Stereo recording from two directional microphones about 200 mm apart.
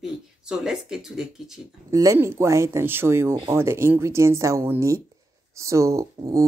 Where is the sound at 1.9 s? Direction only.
15° right (ahead or behind).